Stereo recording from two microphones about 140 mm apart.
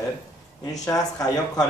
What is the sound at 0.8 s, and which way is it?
Speech, 25° left (ahead or behind).